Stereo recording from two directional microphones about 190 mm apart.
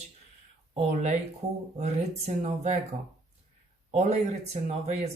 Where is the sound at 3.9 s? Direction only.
35° right (ahead or behind).